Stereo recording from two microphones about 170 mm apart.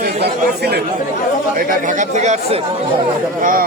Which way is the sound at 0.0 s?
70° right (ahead or behind).